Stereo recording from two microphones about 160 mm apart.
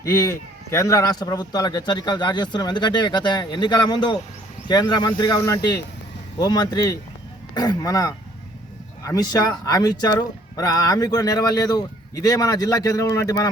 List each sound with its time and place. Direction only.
0.0 s speech: 20° left (ahead or behind)